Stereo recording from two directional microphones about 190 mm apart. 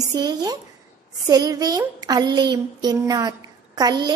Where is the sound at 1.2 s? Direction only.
20° right (ahead or behind).